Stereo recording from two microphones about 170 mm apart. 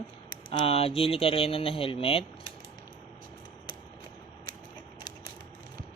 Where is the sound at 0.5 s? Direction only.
35° left (ahead or behind).